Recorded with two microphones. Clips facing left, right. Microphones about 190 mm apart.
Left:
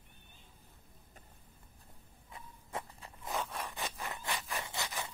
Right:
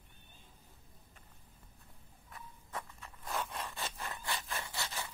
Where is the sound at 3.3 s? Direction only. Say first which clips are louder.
Left 1 dB; 10° left (ahead or behind).